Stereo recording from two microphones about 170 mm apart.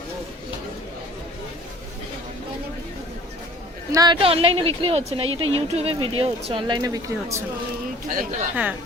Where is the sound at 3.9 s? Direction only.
25° right (ahead or behind).